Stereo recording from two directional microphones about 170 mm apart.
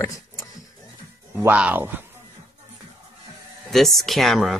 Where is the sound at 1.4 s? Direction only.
10° right (ahead or behind).